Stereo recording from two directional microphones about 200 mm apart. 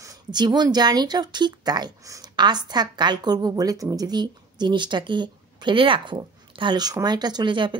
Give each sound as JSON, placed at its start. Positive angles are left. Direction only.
{"t": 0.0, "sound": "speech", "side_deg": -20}